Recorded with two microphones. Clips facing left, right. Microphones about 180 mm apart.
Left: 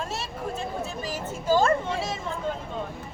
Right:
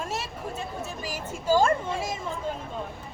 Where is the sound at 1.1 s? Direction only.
10° right (ahead or behind).